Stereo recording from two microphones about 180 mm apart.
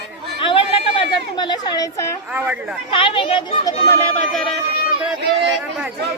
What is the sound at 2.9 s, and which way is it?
Speech, 30° left (ahead or behind).